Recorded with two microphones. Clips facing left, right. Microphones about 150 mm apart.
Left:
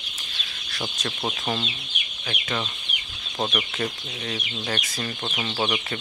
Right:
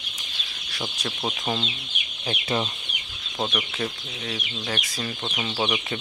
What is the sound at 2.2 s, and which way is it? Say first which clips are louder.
Speech: right 3 dB; 25° right (ahead or behind).